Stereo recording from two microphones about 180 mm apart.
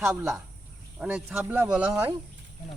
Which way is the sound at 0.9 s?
5° right (ahead or behind).